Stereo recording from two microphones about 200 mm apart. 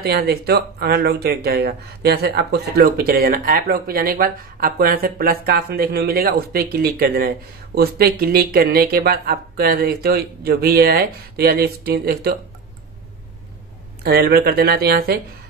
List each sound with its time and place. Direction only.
0.0 s speech: 55° right (ahead or behind)
14.0 s speech: 50° right (ahead or behind)